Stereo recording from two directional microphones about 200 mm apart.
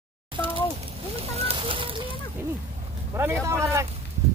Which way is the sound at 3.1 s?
10° right (ahead or behind).